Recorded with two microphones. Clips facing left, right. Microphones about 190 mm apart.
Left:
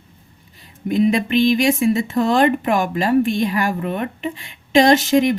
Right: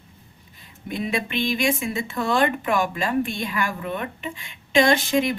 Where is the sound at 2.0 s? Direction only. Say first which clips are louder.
Left 2 dB; 40° left (ahead or behind).